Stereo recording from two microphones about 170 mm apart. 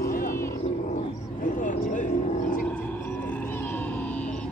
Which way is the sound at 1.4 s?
50° left (ahead or behind).